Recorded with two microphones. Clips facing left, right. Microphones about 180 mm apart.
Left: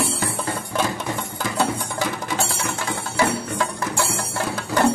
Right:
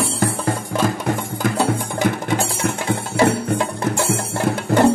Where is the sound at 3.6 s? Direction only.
20° right (ahead or behind).